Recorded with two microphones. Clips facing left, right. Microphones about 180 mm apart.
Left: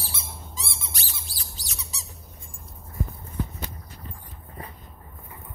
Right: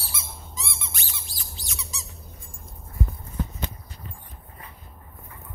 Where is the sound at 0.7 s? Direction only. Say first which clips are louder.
Even; 35° left (ahead or behind).